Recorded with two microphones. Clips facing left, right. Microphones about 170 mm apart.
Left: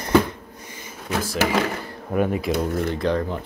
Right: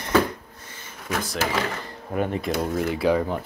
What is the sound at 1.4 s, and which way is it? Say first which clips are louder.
Speech: left 5 dB; 70° left (ahead or behind).